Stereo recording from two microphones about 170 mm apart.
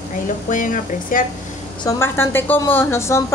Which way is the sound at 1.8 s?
15° left (ahead or behind).